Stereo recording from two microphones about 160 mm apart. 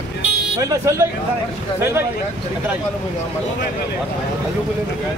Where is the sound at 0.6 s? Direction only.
20° right (ahead or behind).